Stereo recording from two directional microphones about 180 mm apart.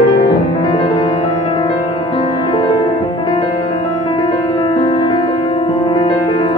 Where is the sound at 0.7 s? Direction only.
30° left (ahead or behind).